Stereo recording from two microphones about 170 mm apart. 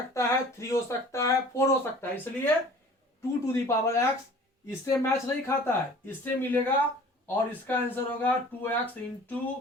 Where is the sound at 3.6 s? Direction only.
15° left (ahead or behind).